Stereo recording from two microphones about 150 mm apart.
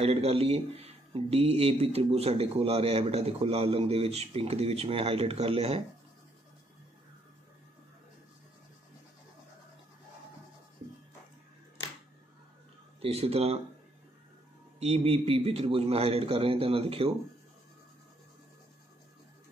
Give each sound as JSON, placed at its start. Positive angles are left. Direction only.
{"t": 0.0, "sound": "speech", "side_deg": -45}
{"t": 13.0, "sound": "speech", "side_deg": -40}
{"t": 14.8, "sound": "a man's voice", "side_deg": -45}